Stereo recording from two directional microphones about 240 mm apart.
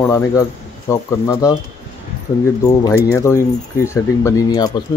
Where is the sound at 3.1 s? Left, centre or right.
Centre.